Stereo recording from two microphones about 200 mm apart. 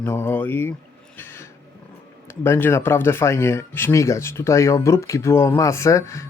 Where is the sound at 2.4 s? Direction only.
10° left (ahead or behind).